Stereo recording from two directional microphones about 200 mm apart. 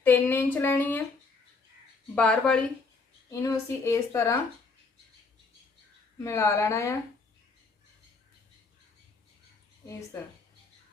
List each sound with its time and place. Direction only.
0.0 s a woman's voice: 10° left (ahead or behind)
2.1 s a woman's voice: 5° left (ahead or behind)
6.2 s a woman's voice: 15° left (ahead or behind)